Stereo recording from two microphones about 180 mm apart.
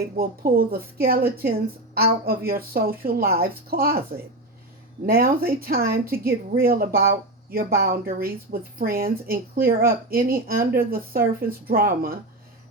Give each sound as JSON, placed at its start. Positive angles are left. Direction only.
{"t": 0.2, "sound": "speech", "side_deg": -55}
{"t": 5.0, "sound": "speech", "side_deg": -55}